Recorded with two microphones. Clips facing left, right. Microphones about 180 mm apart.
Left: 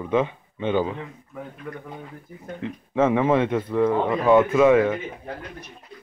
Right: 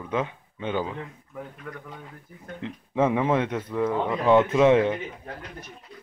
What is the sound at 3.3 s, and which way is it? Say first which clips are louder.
Speech: left 4 dB; 15° left (ahead or behind).